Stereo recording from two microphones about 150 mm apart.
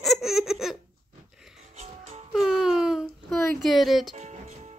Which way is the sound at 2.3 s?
Centre (ahead or behind).